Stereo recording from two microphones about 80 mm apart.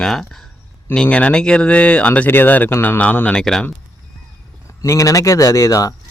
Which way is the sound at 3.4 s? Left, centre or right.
Centre.